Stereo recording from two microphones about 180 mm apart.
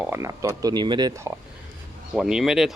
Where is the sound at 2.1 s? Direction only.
Centre (ahead or behind).